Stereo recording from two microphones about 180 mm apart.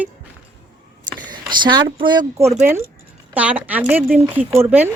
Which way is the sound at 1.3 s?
25° right (ahead or behind).